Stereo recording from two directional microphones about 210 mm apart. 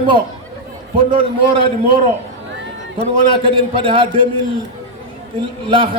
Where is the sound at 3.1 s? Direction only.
25° right (ahead or behind).